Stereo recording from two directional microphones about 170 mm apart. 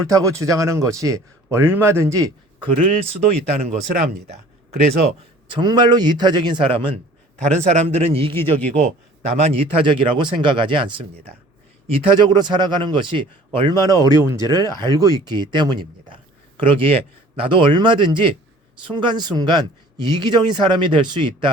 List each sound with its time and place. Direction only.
0.1 s a man's voice: 20° right (ahead or behind)
2.7 s a man's voice: 40° right (ahead or behind)
3.9 s speech: 65° right (ahead or behind)
5.5 s speech: 25° right (ahead or behind)
7.4 s a man's voice: 45° right (ahead or behind); by 21.5 s 25° right (ahead or behind)